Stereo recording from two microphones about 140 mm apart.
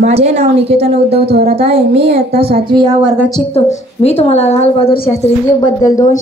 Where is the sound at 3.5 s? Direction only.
50° left (ahead or behind).